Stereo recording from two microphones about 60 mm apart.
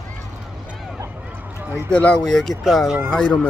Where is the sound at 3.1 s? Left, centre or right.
Centre.